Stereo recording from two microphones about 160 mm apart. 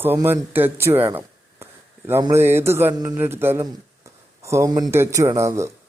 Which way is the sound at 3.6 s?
20° right (ahead or behind).